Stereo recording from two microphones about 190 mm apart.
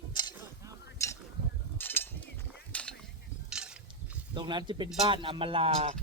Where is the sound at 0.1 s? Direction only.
25° left (ahead or behind); by 2.9 s 5° left (ahead or behind).